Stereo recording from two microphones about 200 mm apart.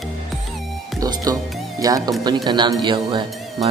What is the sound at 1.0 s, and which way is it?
Speech, 20° right (ahead or behind).